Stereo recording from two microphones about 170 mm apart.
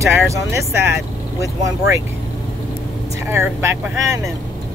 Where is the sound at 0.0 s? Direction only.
15° right (ahead or behind).